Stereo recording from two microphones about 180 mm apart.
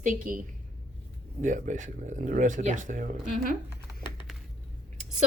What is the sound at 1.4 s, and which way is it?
Speech, 45° right (ahead or behind).